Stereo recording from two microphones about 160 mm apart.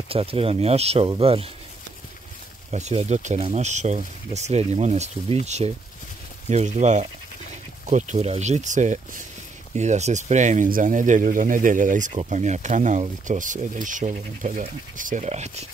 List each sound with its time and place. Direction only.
0.1 s speech: 35° right (ahead or behind)
2.7 s speech: 45° right (ahead or behind)